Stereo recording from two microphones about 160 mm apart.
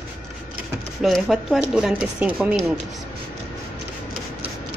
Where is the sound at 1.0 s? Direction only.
Centre (ahead or behind).